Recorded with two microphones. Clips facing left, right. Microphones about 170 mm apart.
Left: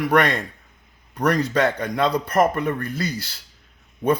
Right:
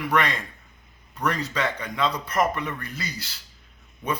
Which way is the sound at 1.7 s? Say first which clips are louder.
Left 5 dB; 50° left (ahead or behind).